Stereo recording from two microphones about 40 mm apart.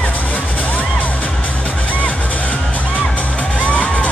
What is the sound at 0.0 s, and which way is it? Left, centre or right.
Music, left.